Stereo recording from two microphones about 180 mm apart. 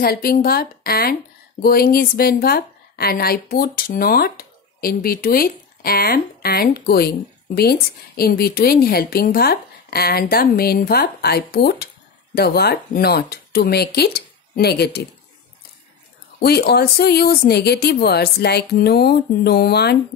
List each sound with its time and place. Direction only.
0.0 s a woman's voice: 55° left (ahead or behind)
16.3 s a woman's voice: 65° left (ahead or behind)